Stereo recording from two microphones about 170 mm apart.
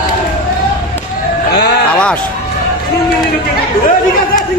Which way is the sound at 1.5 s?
70° left (ahead or behind).